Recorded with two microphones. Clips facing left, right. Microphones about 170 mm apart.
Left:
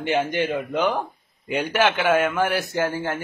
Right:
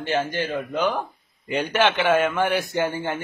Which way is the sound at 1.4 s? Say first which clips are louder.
Even; 10° left (ahead or behind).